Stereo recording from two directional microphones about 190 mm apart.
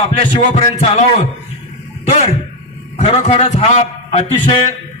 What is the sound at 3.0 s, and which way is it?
A man's voice, 30° left (ahead or behind).